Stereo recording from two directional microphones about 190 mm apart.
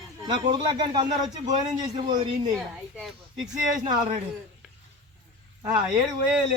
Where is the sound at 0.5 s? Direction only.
25° right (ahead or behind).